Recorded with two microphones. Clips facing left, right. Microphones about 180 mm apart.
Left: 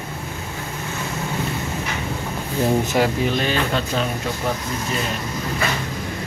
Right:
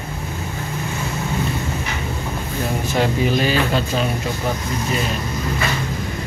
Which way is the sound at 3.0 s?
5° right (ahead or behind).